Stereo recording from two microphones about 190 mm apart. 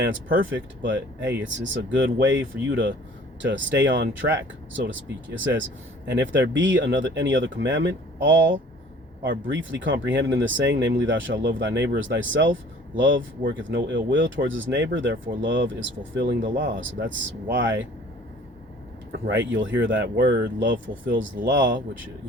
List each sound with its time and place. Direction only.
0.9 s speech: 70° right (ahead or behind)
6.1 s speech: 70° right (ahead or behind)
16.4 s speech: 50° right (ahead or behind)
16.7 s speech: 75° right (ahead or behind)
19.3 s speech: 75° right (ahead or behind)